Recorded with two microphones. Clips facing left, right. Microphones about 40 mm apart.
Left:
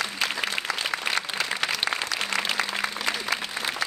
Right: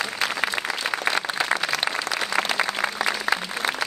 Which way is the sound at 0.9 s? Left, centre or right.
Centre.